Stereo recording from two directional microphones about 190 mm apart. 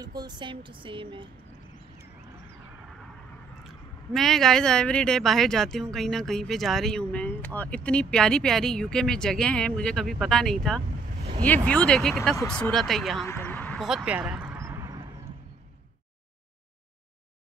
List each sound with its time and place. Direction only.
0.0 s speech: 20° right (ahead or behind)
3.6 s speech: centre (ahead or behind)
11.1 s vehicle: 35° right (ahead or behind)
11.4 s speech: 5° left (ahead or behind)
13.3 s quack: 10° left (ahead or behind); by 14.6 s 5° right (ahead or behind)
14.6 s vehicle: 15° right (ahead or behind)